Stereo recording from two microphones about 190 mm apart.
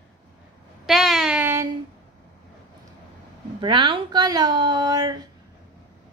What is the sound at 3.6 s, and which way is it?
A woman's voice, 25° right (ahead or behind).